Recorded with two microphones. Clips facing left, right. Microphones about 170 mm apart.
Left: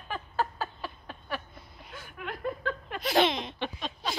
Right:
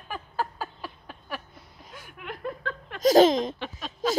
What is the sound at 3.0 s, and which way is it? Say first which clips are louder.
Baby laughter: right 9 dB; 40° right (ahead or behind).